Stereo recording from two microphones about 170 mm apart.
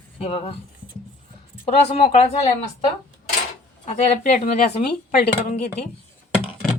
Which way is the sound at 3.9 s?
45° left (ahead or behind).